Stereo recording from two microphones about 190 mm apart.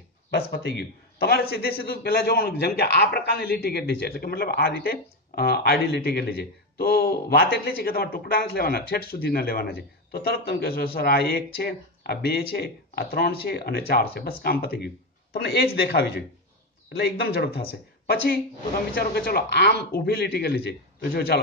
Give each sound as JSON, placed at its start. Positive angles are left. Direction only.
{"t": 0.3, "sound": "a man's voice", "side_deg": 60}